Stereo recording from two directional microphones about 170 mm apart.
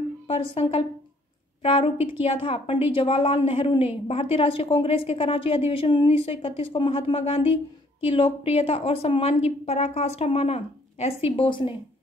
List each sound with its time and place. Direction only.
0.3 s a woman's voice: 35° left (ahead or behind)